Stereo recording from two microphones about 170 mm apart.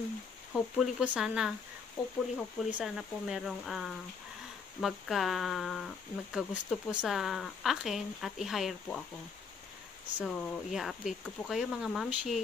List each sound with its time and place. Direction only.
0.5 s speech: centre (ahead or behind)
10.1 s speech: centre (ahead or behind)